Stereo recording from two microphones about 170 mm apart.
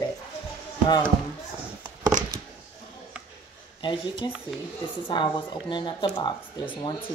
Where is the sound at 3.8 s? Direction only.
30° left (ahead or behind).